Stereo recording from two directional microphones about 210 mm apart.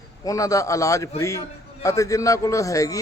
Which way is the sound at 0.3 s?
15° left (ahead or behind).